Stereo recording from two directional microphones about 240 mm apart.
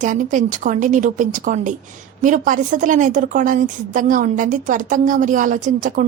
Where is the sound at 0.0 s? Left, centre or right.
Right.